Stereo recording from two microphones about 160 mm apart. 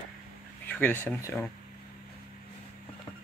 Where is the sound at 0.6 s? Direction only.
10° left (ahead or behind).